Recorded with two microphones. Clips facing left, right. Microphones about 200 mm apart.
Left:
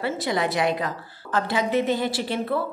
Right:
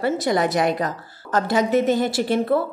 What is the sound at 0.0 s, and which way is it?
A woman's voice, 45° right (ahead or behind).